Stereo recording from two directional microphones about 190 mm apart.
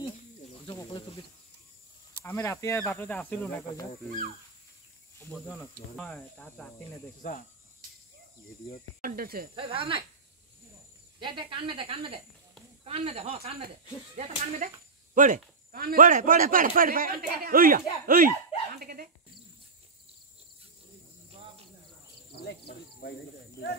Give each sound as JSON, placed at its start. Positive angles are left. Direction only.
{"t": 0.7, "sound": "snake", "side_deg": 25}
{"t": 2.2, "sound": "speech", "side_deg": 15}
{"t": 5.2, "sound": "speech", "side_deg": 10}
{"t": 7.2, "sound": "cricket", "side_deg": 45}
{"t": 9.0, "sound": "a man's voice", "side_deg": -50}
{"t": 9.6, "sound": "speech", "side_deg": -25}
{"t": 11.1, "sound": "a man's voice", "side_deg": -25}
{"t": 22.3, "sound": "cricket", "side_deg": 55}